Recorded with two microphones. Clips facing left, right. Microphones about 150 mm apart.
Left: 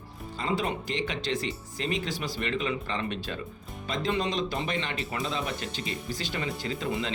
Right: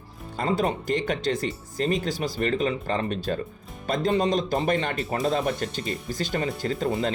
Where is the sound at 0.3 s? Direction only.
45° right (ahead or behind).